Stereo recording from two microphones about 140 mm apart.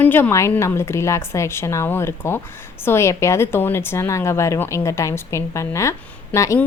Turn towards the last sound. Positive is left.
turn(degrees=20)  # may be behind; listen again after turning